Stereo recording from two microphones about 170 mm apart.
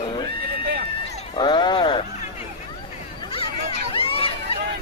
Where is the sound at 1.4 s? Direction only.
25° left (ahead or behind).